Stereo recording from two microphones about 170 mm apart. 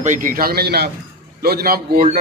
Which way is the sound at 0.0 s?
50° right (ahead or behind).